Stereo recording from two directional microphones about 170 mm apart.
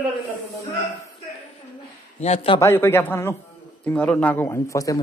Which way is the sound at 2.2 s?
40° left (ahead or behind).